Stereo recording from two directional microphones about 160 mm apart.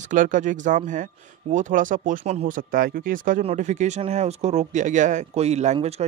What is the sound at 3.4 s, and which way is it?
Speech, 45° right (ahead or behind).